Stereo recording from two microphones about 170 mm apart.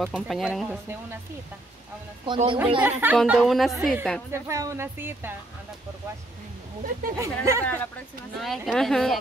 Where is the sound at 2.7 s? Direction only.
10° right (ahead or behind).